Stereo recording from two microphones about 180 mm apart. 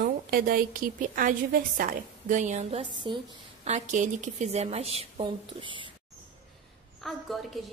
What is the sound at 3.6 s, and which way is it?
A woman's voice, 40° right (ahead or behind).